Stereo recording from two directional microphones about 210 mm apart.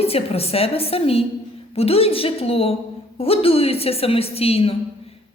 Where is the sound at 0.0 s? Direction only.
30° left (ahead or behind).